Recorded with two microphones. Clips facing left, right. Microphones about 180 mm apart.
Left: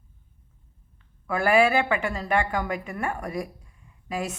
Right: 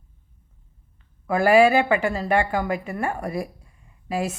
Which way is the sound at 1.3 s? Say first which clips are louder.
Right 5 dB; 35° right (ahead or behind).